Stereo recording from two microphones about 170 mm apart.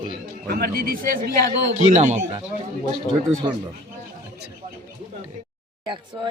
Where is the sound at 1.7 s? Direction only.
45° right (ahead or behind).